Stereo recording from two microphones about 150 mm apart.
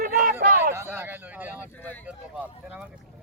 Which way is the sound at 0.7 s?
15° right (ahead or behind).